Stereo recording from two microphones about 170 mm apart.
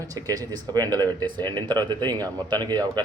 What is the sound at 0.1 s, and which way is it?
A man's voice, 20° right (ahead or behind).